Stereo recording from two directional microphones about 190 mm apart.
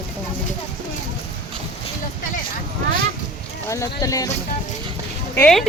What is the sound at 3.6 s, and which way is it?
Speech, 15° left (ahead or behind).